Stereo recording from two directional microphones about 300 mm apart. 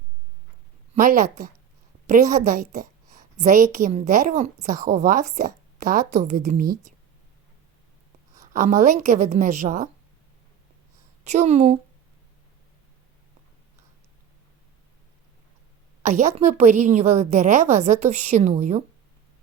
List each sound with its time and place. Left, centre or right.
0.9 s a woman's voice: right
8.5 s a woman's voice: right
11.3 s a woman's voice: right
16.0 s a woman's voice: right